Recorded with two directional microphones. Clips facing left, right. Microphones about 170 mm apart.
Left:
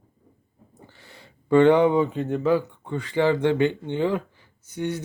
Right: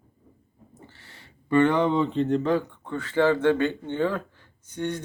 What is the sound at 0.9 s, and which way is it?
Speech, 15° left (ahead or behind).